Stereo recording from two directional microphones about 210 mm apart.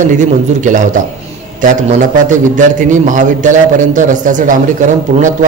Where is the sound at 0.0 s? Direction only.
35° right (ahead or behind).